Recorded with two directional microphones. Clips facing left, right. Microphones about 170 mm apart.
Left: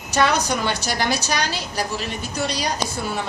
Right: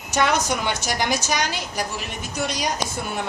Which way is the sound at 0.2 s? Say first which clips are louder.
Left 1 dB; 20° right (ahead or behind).